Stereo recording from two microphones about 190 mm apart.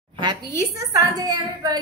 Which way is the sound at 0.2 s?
20° right (ahead or behind).